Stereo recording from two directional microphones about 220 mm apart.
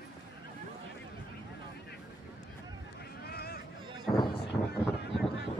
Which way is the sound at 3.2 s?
45° left (ahead or behind).